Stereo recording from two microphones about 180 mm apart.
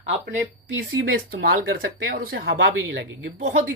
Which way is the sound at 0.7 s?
75° right (ahead or behind).